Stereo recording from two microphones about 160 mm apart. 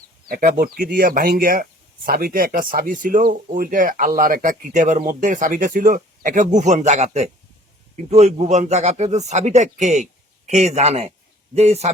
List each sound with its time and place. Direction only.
0.3 s a man's voice: 65° right (ahead or behind); by 11.9 s 40° right (ahead or behind)